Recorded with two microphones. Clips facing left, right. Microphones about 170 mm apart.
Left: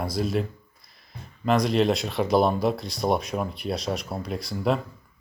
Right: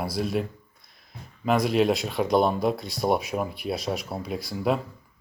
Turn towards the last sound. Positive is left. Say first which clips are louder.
# even
turn(degrees=0)  # may be behind; listen again after turning